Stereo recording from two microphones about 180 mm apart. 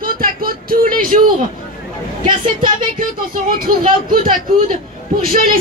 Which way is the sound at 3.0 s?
50° right (ahead or behind).